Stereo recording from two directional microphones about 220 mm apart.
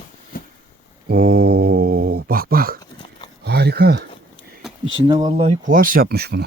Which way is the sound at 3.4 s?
45° right (ahead or behind).